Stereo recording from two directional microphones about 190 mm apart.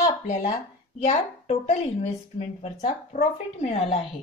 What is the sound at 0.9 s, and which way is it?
A woman's voice, 35° left (ahead or behind).